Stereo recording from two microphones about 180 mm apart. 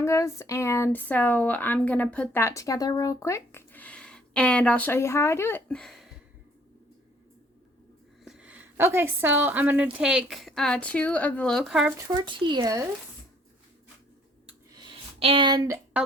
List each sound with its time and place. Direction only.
0.0 s speech: 15° left (ahead or behind)
8.2 s a woman's voice: 5° right (ahead or behind)
11.9 s speech: 20° right (ahead or behind)
14.8 s a sound: 30° right (ahead or behind); by 16.0 s 10° right (ahead or behind)